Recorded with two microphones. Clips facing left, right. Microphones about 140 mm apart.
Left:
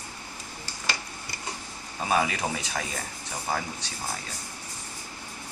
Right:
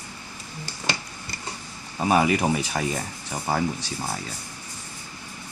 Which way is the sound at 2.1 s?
25° right (ahead or behind).